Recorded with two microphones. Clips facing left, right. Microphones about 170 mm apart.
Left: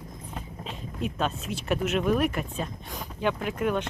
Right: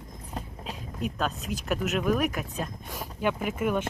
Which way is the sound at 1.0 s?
Centre (ahead or behind).